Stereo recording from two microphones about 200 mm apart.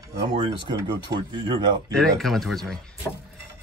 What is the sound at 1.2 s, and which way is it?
Speech, 25° right (ahead or behind).